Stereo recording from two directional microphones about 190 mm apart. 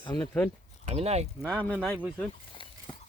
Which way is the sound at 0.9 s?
35° right (ahead or behind).